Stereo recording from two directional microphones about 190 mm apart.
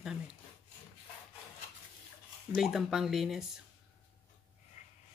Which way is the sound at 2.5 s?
Centre (ahead or behind).